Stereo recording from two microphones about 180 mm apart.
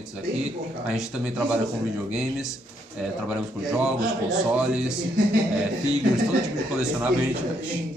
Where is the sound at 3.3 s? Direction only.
5° right (ahead or behind).